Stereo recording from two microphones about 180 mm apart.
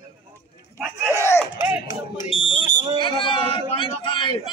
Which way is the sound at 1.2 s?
15° left (ahead or behind).